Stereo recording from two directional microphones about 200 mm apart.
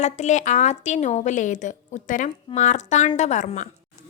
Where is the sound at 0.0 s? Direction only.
35° left (ahead or behind).